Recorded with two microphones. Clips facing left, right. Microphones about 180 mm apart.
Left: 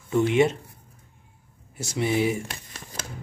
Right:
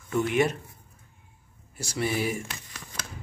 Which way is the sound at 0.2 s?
25° left (ahead or behind).